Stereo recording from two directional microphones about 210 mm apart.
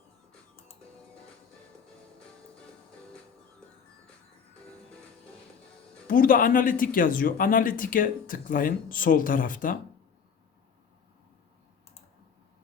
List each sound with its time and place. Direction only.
6.1 s speech: 40° left (ahead or behind)